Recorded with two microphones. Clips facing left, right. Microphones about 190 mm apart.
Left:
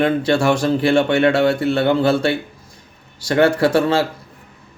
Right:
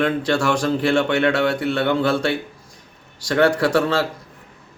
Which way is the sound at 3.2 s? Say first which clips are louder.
Left 2 dB; 5° left (ahead or behind).